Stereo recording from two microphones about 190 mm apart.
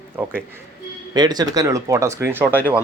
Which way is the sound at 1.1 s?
20° right (ahead or behind).